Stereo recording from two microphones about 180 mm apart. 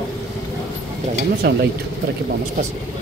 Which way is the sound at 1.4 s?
65° right (ahead or behind).